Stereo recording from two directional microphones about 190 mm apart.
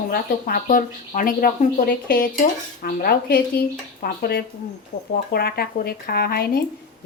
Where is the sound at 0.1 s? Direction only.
50° left (ahead or behind).